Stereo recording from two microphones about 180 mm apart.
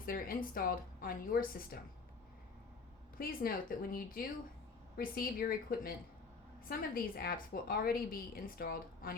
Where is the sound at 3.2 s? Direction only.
55° left (ahead or behind).